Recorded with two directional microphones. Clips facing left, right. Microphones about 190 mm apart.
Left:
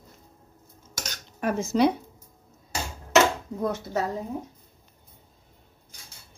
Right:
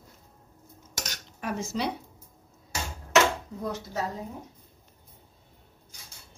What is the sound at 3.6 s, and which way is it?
Speech, 55° left (ahead or behind).